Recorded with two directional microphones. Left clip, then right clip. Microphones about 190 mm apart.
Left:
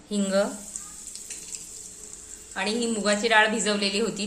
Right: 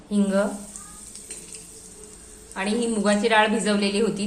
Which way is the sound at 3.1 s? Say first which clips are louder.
Right 1 dB; 5° left (ahead or behind).